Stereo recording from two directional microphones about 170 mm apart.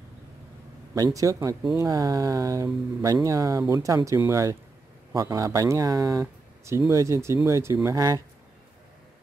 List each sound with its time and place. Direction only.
0.9 s speech: 20° right (ahead or behind)